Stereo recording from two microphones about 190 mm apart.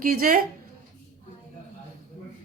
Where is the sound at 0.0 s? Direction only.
50° right (ahead or behind).